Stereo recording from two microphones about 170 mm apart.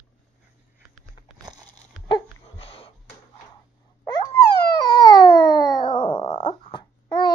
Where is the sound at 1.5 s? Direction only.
25° right (ahead or behind).